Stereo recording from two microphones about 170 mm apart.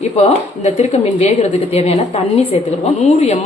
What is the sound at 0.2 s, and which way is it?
A woman's voice, 40° left (ahead or behind).